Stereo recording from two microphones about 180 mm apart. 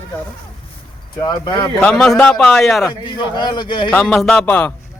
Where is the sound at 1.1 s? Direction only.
25° left (ahead or behind).